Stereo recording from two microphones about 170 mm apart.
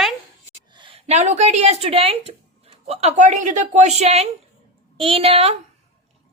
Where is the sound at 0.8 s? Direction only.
30° right (ahead or behind).